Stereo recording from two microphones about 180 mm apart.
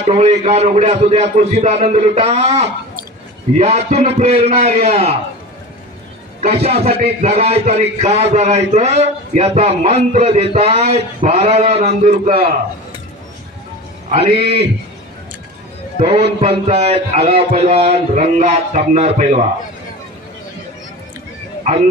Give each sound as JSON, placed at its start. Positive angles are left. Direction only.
{"t": 0.0, "sound": "a man's voice", "side_deg": -35}
{"t": 6.4, "sound": "a man's voice", "side_deg": -35}
{"t": 14.1, "sound": "a man's voice", "side_deg": -35}
{"t": 16.0, "sound": "a man's voice", "side_deg": -35}